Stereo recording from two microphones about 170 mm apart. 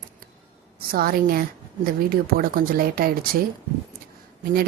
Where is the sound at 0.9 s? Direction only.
60° right (ahead or behind).